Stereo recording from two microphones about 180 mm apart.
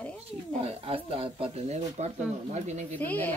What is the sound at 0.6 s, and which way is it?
Speech, 30° right (ahead or behind).